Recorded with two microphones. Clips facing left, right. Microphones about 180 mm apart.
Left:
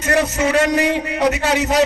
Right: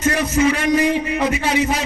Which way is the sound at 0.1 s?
70° left (ahead or behind).